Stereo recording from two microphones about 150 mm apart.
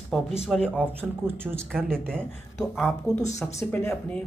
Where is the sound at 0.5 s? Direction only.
5° left (ahead or behind).